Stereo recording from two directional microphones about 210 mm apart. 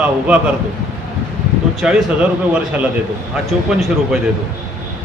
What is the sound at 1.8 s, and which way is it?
A man's voice, 5° right (ahead or behind).